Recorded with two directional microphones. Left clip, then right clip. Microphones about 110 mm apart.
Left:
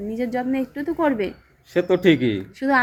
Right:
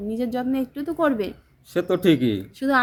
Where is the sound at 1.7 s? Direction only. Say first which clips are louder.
Left 2 dB; 50° right (ahead or behind).